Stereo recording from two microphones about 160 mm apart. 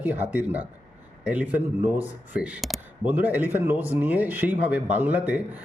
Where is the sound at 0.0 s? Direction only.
10° right (ahead or behind).